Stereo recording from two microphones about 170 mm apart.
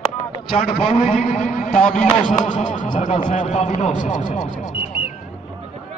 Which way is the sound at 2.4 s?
50° left (ahead or behind).